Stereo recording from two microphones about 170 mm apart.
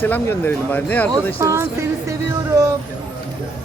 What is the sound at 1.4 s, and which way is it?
Speech, 15° right (ahead or behind).